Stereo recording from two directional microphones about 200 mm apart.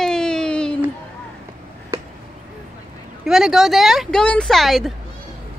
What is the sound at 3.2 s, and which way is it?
Speech, centre (ahead or behind).